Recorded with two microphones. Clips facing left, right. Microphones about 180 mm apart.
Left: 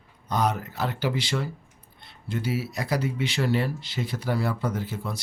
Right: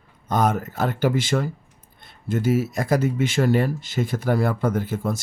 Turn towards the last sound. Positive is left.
turn(degrees=-50)  # may be behind; listen again after turning